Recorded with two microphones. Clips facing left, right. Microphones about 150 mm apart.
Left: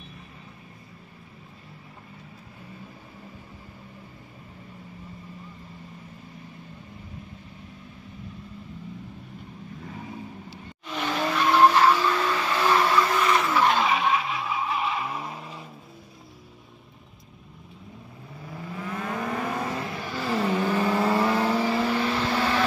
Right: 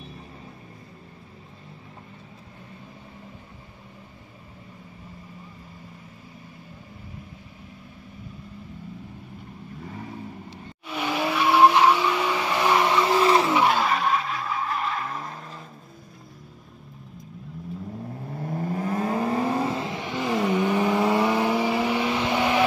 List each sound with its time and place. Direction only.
10.9 s vehicle: 10° right (ahead or behind); by 13.5 s 30° right (ahead or behind)
13.5 s skidding: 10° right (ahead or behind); by 15.6 s 5° left (ahead or behind)
18.3 s vehicle: 50° right (ahead or behind); by 22.6 s 15° right (ahead or behind)